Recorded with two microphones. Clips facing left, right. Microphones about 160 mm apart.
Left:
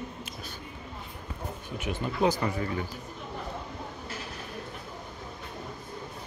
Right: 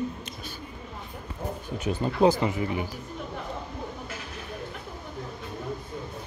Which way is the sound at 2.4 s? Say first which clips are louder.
Right 3 dB; 20° right (ahead or behind).